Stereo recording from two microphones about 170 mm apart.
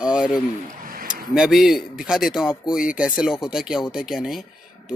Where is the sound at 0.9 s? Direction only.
60° right (ahead or behind).